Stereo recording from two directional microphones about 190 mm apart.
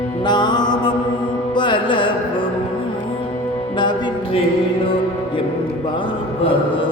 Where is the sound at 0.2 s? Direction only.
25° left (ahead or behind).